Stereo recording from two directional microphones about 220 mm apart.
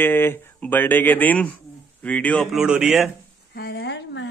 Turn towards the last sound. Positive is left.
turn(degrees=55)  # may be behind; listen again after turning